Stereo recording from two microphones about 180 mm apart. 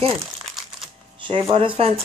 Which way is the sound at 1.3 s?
30° right (ahead or behind).